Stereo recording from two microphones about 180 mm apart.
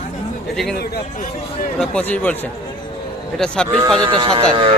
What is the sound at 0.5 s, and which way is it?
Speech, centre (ahead or behind).